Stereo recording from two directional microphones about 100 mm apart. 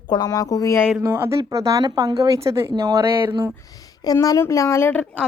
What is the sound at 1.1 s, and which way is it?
Speech, 30° right (ahead or behind).